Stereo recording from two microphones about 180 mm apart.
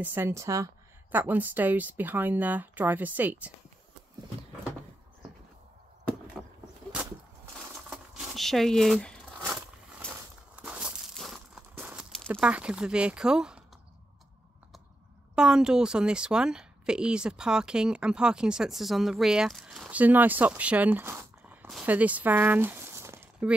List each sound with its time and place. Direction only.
0.0 s speech: 10° right (ahead or behind)
6.4 s vehicle: centre (ahead or behind)
7.9 s a sound: centre (ahead or behind)
12.3 s speech: 5° right (ahead or behind)
15.3 s speech: 5° right (ahead or behind)
21.6 s a sound: 5° right (ahead or behind)